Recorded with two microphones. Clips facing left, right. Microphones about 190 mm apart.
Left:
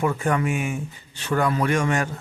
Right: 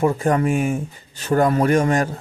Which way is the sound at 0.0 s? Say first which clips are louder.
Right 5 dB; 35° right (ahead or behind).